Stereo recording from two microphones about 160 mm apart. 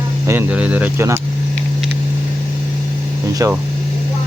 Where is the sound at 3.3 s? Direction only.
20° right (ahead or behind).